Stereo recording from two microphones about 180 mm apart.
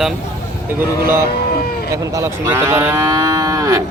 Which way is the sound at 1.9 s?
20° right (ahead or behind).